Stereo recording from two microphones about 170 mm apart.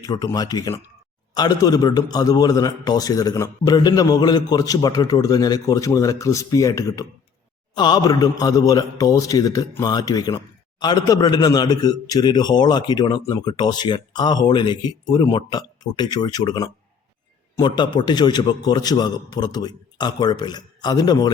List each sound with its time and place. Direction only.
0.0 s a man's voice: 20° left (ahead or behind)